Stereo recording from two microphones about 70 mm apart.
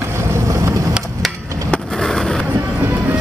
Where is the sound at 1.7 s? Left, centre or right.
Centre.